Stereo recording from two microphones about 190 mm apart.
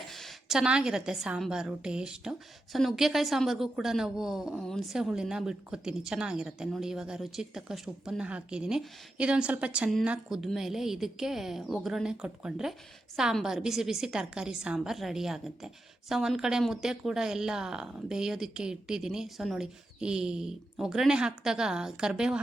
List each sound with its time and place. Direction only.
0.1 s a woman's voice: centre (ahead or behind)